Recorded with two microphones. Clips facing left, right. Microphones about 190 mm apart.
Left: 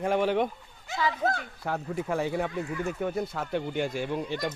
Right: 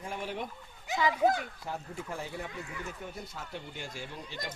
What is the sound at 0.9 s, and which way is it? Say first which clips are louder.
Speech: right 1 dB; 15° right (ahead or behind).